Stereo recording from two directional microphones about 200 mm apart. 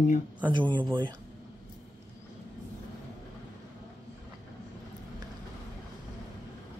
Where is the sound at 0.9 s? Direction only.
20° right (ahead or behind).